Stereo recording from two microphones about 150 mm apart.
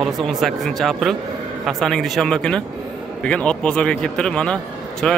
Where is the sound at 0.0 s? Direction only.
Centre (ahead or behind).